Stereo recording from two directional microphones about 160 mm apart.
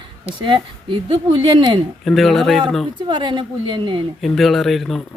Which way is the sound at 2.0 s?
Centre (ahead or behind).